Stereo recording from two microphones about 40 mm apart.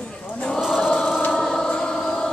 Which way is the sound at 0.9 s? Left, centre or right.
Centre.